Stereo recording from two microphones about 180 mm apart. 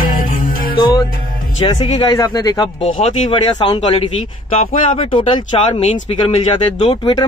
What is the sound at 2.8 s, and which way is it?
Speech, 40° left (ahead or behind).